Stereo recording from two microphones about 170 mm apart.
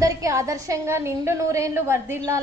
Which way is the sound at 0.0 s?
20° right (ahead or behind).